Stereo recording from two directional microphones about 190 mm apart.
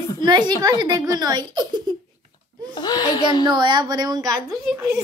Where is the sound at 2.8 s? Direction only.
20° left (ahead or behind).